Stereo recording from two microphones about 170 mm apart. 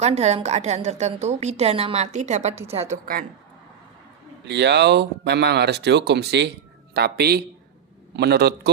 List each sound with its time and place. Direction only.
0.0 s a woman's voice: 40° right (ahead or behind)
4.4 s a man's voice: 80° right